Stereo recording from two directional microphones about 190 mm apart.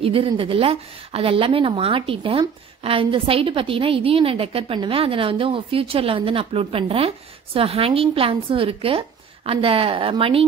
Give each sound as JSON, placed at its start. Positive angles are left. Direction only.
{"t": 0.0, "sound": "speech", "side_deg": -30}